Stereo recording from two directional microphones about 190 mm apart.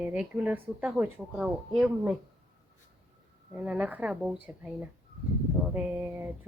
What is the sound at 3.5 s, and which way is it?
Speech, 5° right (ahead or behind).